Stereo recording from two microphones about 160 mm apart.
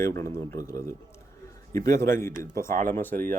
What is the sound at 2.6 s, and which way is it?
Speech, 55° right (ahead or behind).